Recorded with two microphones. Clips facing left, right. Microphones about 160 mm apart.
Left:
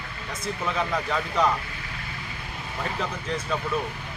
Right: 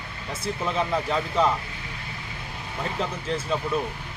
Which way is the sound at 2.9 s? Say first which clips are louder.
Right 3 dB; 30° right (ahead or behind).